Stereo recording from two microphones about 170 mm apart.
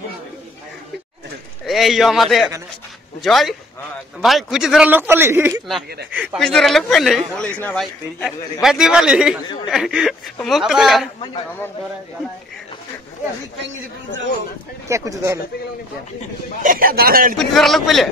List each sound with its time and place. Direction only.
1.7 s a man's voice: centre (ahead or behind)
14.9 s a man's voice: 15° right (ahead or behind)
16.6 s a man's voice: 55° right (ahead or behind)
17.4 s a man's voice: centre (ahead or behind)